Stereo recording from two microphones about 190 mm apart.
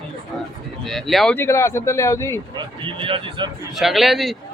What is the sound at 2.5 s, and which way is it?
Speech, 25° right (ahead or behind).